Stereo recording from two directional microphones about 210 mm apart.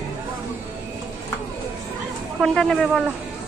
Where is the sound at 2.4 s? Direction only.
Centre (ahead or behind).